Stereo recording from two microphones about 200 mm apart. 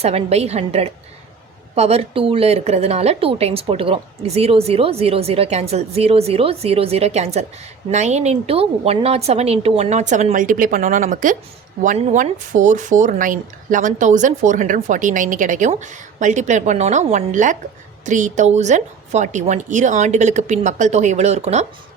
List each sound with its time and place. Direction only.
0.0 s speech: 30° right (ahead or behind)